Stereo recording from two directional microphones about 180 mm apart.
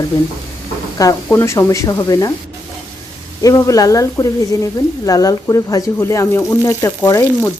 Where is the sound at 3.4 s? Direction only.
20° left (ahead or behind).